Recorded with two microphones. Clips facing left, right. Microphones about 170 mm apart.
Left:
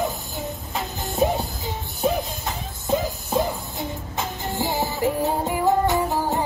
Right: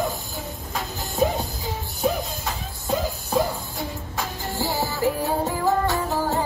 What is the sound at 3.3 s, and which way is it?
Music, 20° left (ahead or behind).